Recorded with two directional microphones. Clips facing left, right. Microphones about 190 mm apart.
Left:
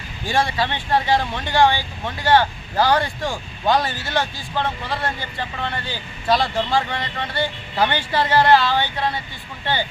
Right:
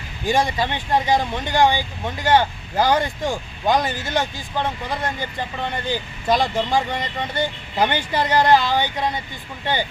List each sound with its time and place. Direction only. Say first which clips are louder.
0.3 s speech: right 1 dB; 20° right (ahead or behind)